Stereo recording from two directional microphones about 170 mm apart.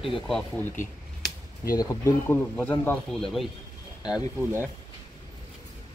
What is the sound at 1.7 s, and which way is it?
Speech, 15° left (ahead or behind).